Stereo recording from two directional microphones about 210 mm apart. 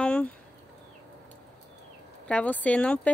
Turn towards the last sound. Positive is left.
turn(degrees=5)  # may be behind; listen again after turning